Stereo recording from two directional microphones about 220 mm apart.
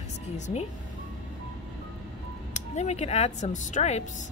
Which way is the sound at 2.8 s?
30° left (ahead or behind).